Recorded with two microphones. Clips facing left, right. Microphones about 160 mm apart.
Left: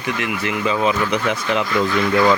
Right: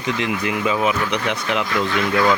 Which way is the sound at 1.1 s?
Centre (ahead or behind).